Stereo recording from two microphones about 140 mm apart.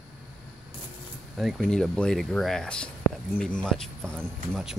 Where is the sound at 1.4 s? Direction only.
Centre (ahead or behind).